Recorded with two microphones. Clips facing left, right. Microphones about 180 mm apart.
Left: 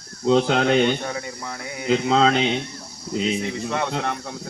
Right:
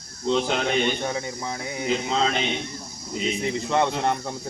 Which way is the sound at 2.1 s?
80° left.